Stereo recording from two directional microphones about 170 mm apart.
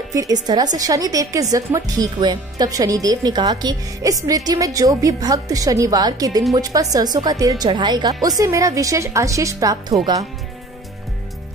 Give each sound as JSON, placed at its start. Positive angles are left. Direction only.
{"t": 0.1, "sound": "a woman's voice", "side_deg": -20}